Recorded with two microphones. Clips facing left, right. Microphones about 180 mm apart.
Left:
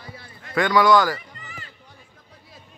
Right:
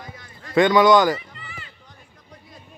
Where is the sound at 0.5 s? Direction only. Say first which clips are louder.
Right 3 dB; 20° right (ahead or behind).